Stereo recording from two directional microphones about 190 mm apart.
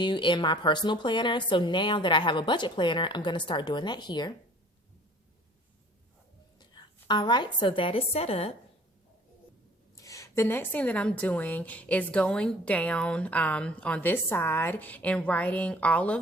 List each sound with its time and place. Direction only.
0.0 s speech: 25° left (ahead or behind)
6.6 s a woman's voice: 25° left (ahead or behind)
10.0 s a woman's voice: 15° left (ahead or behind)